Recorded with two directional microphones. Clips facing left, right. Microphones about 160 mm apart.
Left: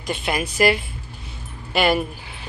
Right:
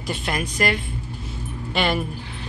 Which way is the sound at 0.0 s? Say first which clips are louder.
Left 2 dB; centre (ahead or behind).